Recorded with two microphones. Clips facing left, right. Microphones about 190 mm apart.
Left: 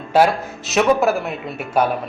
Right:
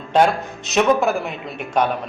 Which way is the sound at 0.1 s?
5° left (ahead or behind).